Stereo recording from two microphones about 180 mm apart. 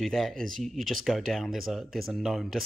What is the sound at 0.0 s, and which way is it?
Speech, centre (ahead or behind).